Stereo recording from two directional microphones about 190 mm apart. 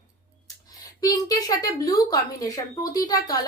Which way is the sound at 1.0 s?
20° left (ahead or behind).